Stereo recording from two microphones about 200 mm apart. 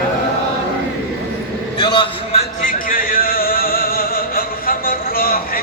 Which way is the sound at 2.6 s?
45° left (ahead or behind).